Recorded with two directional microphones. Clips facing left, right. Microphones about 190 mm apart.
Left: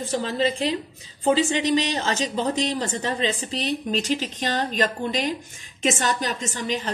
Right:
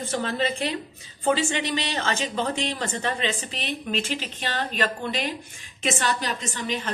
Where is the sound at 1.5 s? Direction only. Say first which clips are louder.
Left 5 dB; 35° left (ahead or behind).